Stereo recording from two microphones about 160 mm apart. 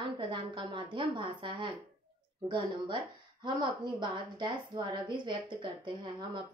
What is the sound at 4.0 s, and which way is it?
A woman's voice, 30° right (ahead or behind).